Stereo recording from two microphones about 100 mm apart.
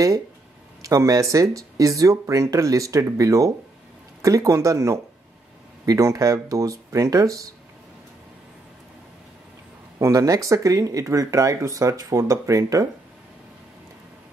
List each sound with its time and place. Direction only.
0.8 s speech: 35° right (ahead or behind)
9.9 s speech: 30° right (ahead or behind)